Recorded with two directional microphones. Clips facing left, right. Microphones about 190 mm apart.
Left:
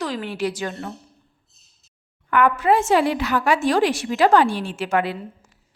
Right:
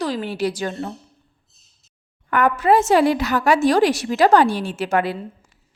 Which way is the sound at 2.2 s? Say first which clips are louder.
Right 1 dB; 45° right (ahead or behind).